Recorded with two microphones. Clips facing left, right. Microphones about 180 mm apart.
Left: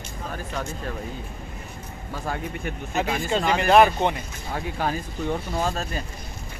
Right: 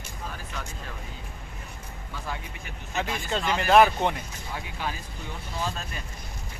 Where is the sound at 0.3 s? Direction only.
40° left (ahead or behind).